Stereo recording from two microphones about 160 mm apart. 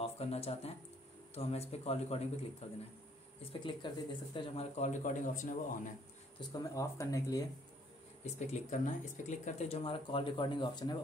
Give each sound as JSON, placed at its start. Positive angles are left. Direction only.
{"t": 0.0, "sound": "speech", "side_deg": 40}
{"t": 3.6, "sound": "speech", "side_deg": 30}
{"t": 4.7, "sound": "speech", "side_deg": 50}
{"t": 6.6, "sound": "speech", "side_deg": 20}
{"t": 8.2, "sound": "speech", "side_deg": 45}